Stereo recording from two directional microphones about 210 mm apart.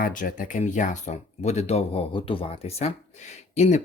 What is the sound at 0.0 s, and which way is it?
Speech, 40° left (ahead or behind).